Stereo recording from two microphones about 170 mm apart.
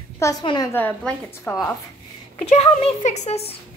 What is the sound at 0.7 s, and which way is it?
A child's voice, 10° left (ahead or behind).